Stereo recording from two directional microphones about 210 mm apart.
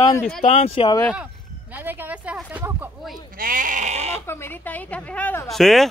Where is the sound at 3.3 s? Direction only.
40° right (ahead or behind).